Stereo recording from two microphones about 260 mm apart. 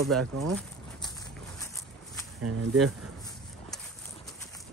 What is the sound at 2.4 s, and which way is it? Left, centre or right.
Speech, right.